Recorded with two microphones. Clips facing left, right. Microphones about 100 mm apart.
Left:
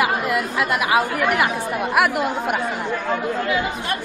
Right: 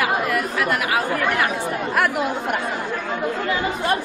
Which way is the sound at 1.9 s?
5° left (ahead or behind).